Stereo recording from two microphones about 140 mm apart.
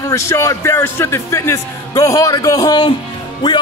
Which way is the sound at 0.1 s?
20° left (ahead or behind).